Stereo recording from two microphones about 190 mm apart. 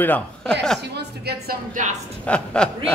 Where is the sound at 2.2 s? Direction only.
5° left (ahead or behind).